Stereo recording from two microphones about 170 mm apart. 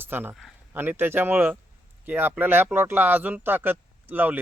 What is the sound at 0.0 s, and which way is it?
A man's voice, 10° right (ahead or behind).